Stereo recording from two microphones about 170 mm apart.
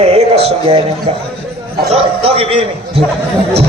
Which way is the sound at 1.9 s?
35° right (ahead or behind).